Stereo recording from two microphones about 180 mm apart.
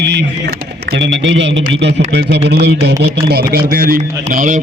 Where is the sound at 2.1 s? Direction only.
70° right (ahead or behind).